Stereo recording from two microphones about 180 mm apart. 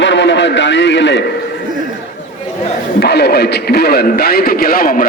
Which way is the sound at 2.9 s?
65° left (ahead or behind).